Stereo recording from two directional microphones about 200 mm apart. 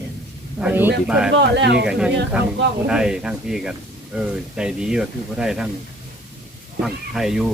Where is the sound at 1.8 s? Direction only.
5° right (ahead or behind).